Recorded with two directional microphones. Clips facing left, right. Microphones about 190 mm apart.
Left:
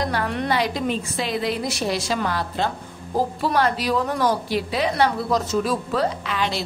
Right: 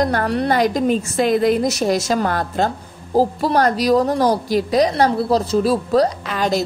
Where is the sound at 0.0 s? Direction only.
45° right (ahead or behind).